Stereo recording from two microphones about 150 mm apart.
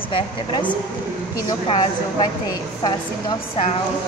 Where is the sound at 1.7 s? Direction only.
25° left (ahead or behind).